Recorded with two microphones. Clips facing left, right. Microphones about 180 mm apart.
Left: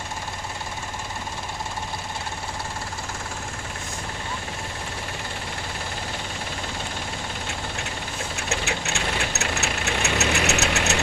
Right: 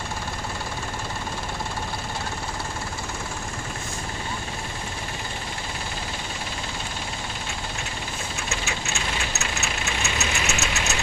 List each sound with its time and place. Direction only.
8.4 s engine: 65° left (ahead or behind)